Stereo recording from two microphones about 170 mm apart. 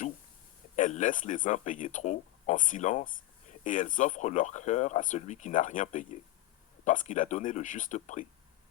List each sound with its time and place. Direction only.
0.8 s speech: 45° left (ahead or behind)